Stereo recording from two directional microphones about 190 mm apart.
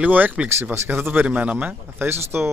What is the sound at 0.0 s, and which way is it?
Speech, 10° right (ahead or behind).